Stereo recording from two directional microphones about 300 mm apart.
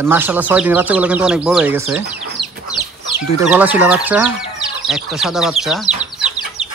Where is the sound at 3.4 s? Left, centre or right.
Centre.